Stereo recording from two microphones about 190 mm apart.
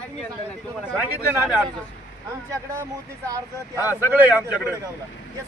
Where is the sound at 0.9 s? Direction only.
5° right (ahead or behind).